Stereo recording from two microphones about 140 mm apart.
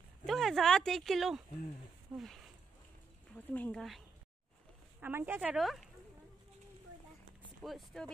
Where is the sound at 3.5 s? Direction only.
10° left (ahead or behind).